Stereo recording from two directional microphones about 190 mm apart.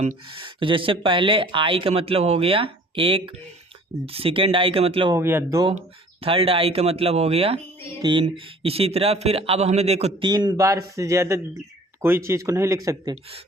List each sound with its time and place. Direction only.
0.3 s speech: 25° right (ahead or behind)
5.1 s speech: 15° right (ahead or behind)
6.2 s speech: 30° right (ahead or behind)